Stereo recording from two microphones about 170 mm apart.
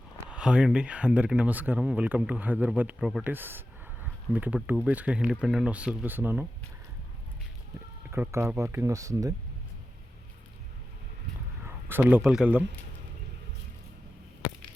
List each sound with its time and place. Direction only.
0.3 s speech: 5° right (ahead or behind)
8.1 s speech: 15° right (ahead or behind)
11.6 s a sound: 10° right (ahead or behind)
12.2 s speech: 5° right (ahead or behind)